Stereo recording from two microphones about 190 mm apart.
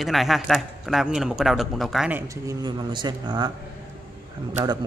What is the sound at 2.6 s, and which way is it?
Speech, 25° right (ahead or behind).